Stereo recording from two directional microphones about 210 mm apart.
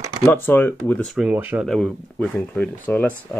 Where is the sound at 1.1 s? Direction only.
5° right (ahead or behind).